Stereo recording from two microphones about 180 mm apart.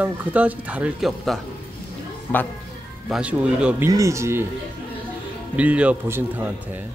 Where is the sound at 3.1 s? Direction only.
5° right (ahead or behind).